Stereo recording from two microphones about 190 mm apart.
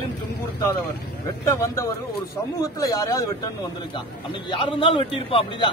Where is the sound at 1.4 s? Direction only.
15° left (ahead or behind).